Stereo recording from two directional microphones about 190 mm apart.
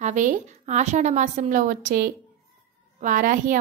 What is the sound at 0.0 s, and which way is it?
A woman's voice, 40° right (ahead or behind).